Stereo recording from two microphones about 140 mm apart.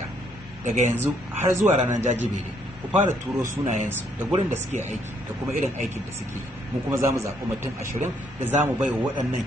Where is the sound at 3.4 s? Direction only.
65° right (ahead or behind).